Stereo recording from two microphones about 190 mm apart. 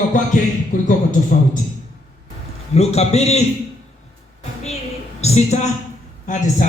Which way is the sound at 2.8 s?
35° left (ahead or behind).